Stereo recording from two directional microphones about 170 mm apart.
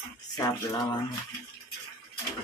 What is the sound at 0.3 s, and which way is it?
Speech, 20° left (ahead or behind).